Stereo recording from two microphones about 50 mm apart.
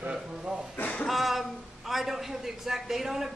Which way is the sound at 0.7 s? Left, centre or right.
Left.